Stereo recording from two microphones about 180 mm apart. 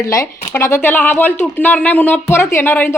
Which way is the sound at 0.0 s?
20° left (ahead or behind).